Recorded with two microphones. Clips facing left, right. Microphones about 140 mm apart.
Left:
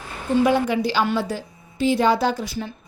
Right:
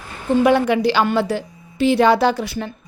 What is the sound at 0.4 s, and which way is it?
A woman's voice, 70° right (ahead or behind).